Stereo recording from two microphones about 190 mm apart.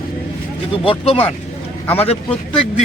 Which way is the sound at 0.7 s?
30° left (ahead or behind).